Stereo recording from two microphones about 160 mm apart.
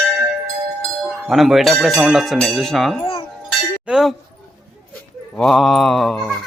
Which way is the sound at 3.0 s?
35° left (ahead or behind).